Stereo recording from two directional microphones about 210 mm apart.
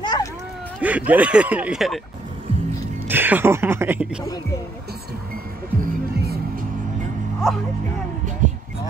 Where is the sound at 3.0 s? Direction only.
10° right (ahead or behind).